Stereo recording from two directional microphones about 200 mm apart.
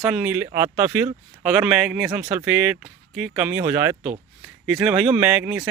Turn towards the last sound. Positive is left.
turn(degrees=-5)  # may be behind; listen again after turning